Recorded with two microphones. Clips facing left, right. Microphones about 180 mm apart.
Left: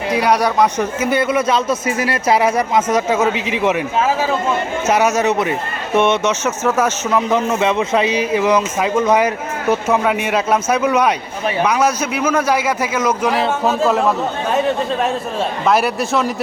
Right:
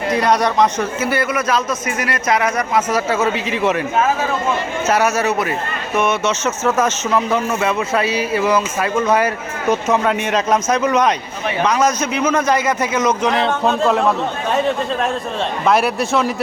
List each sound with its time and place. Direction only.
0.1 s speech: 5° left (ahead or behind)
4.9 s speech: 15° left (ahead or behind)
6.2 s speech: 15° left (ahead or behind)
15.6 s a man's voice: centre (ahead or behind)